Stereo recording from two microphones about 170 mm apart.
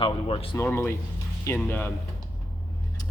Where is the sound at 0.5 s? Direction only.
15° left (ahead or behind).